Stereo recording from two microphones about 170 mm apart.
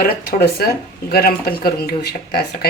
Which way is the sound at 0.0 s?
60° left (ahead or behind).